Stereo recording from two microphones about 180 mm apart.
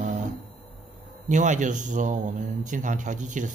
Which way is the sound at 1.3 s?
45° right (ahead or behind).